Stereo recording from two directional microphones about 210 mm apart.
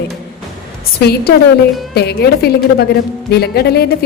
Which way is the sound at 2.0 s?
50° left (ahead or behind).